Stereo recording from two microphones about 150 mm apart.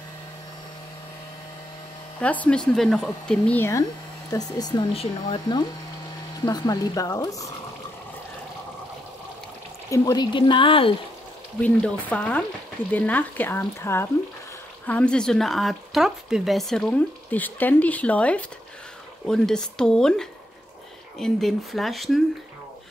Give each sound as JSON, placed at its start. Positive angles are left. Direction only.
{"t": 2.1, "sound": "speech", "side_deg": 10}
{"t": 4.3, "sound": "speech", "side_deg": 25}
{"t": 9.8, "sound": "speech", "side_deg": 20}
{"t": 10.3, "sound": "speech", "side_deg": 35}
{"t": 11.6, "sound": "speech", "side_deg": 10}